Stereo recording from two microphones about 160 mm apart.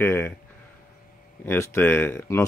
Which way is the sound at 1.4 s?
15° left (ahead or behind).